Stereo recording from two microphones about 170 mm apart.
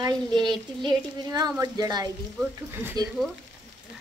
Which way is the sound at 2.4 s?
10° right (ahead or behind).